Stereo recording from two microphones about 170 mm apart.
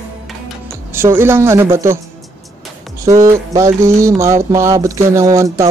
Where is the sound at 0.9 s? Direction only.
15° right (ahead or behind).